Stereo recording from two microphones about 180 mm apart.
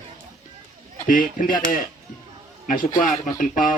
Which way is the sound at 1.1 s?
50° left (ahead or behind).